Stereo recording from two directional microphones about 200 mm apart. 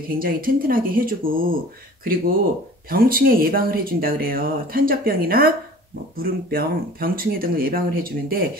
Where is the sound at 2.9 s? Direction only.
45° right (ahead or behind).